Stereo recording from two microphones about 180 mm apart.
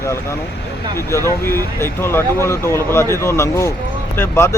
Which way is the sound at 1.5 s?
15° left (ahead or behind).